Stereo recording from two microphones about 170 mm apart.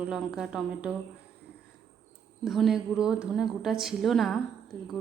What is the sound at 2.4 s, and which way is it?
A woman's voice, centre (ahead or behind).